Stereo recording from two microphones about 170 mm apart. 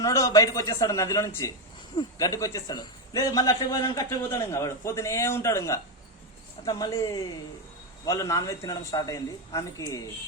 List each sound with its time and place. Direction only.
0.0 s a man's voice: 20° left (ahead or behind)